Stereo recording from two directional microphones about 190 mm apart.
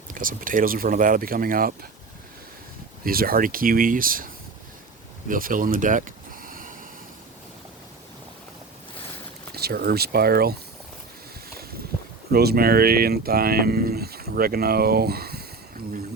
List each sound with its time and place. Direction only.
0.1 s speech: 45° right (ahead or behind)
3.0 s speech: 50° right (ahead or behind)
5.3 s speech: 45° right (ahead or behind)
9.5 s speech: 55° right (ahead or behind)
12.3 s speech: 55° right (ahead or behind)